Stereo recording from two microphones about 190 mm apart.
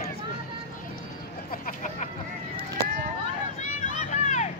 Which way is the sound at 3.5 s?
40° left (ahead or behind).